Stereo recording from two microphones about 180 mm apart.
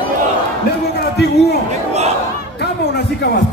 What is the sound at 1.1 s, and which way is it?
Speech, 65° left (ahead or behind).